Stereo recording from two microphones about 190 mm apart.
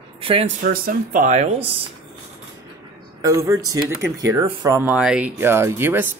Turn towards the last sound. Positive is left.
turn(degrees=-10)  # may be behind; listen again after turning